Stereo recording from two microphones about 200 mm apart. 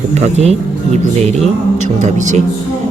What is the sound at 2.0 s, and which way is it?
Speech, 35° right (ahead or behind).